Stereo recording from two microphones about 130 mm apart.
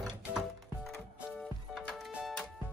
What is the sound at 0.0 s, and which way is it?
Music, centre (ahead or behind).